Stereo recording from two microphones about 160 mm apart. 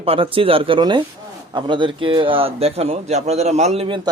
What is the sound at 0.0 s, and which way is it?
Speech, 35° right (ahead or behind).